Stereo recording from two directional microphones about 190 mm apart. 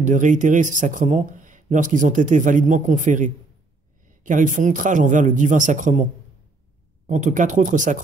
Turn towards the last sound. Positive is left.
turn(degrees=-40)  # may be behind; listen again after turning